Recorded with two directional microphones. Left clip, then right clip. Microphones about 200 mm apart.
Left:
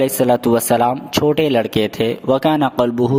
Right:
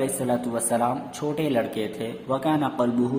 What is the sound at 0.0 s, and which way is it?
Speech, 50° left (ahead or behind).